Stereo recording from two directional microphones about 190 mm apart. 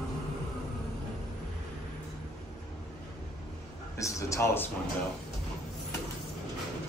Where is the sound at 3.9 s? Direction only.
15° left (ahead or behind).